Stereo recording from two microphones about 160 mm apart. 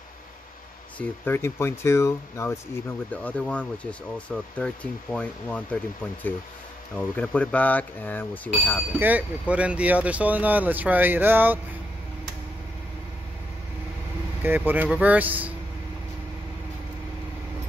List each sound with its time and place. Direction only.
0.9 s speech: 15° left (ahead or behind)
7.0 s speech: 10° left (ahead or behind)
9.0 s speech: 10° right (ahead or behind)
14.4 s speech: 10° right (ahead or behind)